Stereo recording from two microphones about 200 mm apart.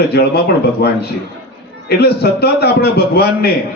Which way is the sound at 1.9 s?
50° left (ahead or behind).